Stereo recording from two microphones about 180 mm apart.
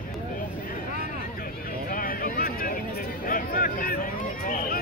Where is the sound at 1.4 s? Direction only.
55° left (ahead or behind).